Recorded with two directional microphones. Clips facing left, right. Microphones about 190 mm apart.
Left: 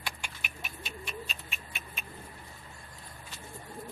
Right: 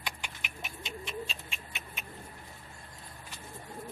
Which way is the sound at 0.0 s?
20° right (ahead or behind).